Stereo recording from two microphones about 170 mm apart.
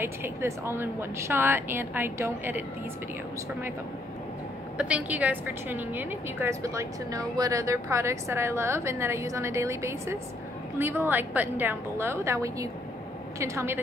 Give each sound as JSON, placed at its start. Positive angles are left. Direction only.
{"t": 0.0, "sound": "a woman's voice", "side_deg": -15}
{"t": 4.7, "sound": "a woman's voice", "side_deg": -5}